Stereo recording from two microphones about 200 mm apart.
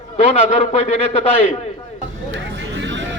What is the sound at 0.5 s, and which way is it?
Speech, 35° left (ahead or behind).